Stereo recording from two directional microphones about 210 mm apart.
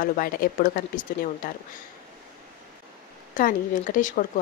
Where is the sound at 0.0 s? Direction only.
40° left (ahead or behind).